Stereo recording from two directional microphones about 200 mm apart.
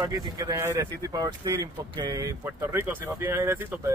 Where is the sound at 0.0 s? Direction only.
20° right (ahead or behind).